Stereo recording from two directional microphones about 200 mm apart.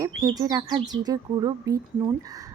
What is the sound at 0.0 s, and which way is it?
Speech, 20° right (ahead or behind).